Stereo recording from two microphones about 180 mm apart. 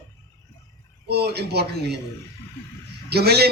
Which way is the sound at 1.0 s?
65° right (ahead or behind).